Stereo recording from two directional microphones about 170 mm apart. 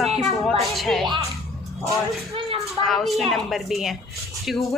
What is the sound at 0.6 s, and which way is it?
Speech, centre (ahead or behind).